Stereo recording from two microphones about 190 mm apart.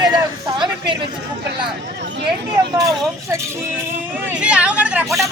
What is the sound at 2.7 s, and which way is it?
Speech, 15° right (ahead or behind).